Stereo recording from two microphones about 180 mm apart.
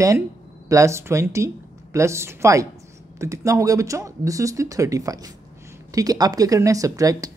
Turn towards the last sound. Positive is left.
turn(degrees=-20)  # may be behind; listen again after turning